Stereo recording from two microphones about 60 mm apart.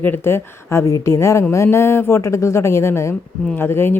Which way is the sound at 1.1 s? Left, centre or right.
Left.